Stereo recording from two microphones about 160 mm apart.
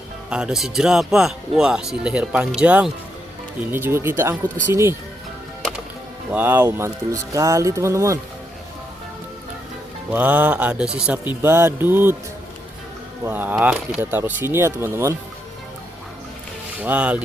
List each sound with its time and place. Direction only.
0.3 s speech: 5° right (ahead or behind)
6.3 s speech: 10° right (ahead or behind)
10.1 s speech: 10° right (ahead or behind)
13.2 s speech: 10° right (ahead or behind)
16.8 s speech: 10° right (ahead or behind)